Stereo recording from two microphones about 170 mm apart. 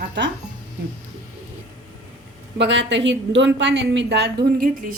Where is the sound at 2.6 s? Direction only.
90° right.